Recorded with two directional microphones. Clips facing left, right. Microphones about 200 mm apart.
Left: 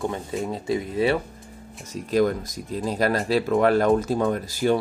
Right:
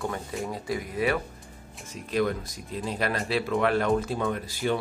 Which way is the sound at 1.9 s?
40° left (ahead or behind).